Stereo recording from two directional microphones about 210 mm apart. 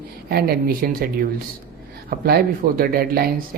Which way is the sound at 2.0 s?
45° right (ahead or behind).